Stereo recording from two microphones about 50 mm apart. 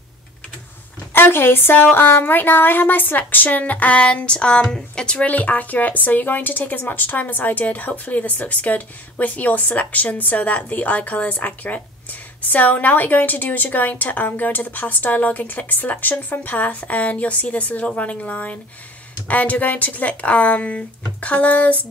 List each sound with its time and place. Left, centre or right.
1.1 s a woman's voice: left
5.3 s speech: left